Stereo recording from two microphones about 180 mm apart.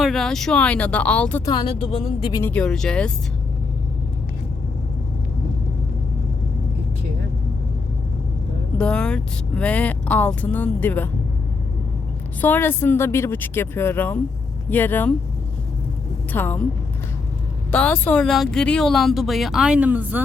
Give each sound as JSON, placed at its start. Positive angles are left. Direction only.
{"t": 0.0, "sound": "speech", "side_deg": 0}
{"t": 1.5, "sound": "speech", "side_deg": 25}
{"t": 2.4, "sound": "speech", "side_deg": 5}
{"t": 8.8, "sound": "speech", "side_deg": 5}
{"t": 12.4, "sound": "speech", "side_deg": 10}
{"t": 16.3, "sound": "speech", "side_deg": 10}
{"t": 17.7, "sound": "speech", "side_deg": 5}